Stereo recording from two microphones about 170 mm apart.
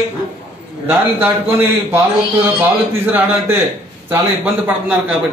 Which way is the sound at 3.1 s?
10° right (ahead or behind).